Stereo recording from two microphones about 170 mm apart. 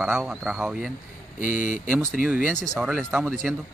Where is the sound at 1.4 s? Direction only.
50° left (ahead or behind).